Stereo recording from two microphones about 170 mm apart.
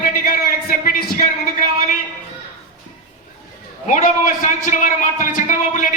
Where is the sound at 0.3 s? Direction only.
60° left (ahead or behind).